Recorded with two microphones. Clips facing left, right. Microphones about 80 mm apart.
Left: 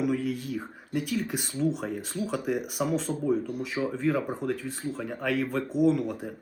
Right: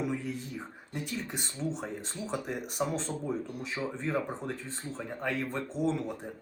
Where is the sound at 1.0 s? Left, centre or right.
Centre.